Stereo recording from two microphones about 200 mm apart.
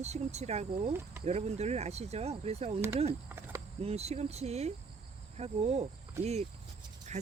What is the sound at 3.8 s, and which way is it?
Speech, 30° right (ahead or behind).